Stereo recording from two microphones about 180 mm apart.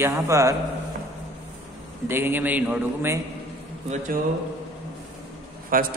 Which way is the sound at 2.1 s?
10° right (ahead or behind).